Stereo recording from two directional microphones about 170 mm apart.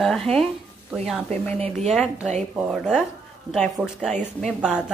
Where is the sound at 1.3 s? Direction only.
5° left (ahead or behind).